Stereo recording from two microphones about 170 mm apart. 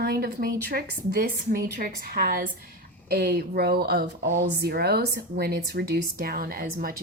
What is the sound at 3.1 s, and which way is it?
Speech, 70° right (ahead or behind).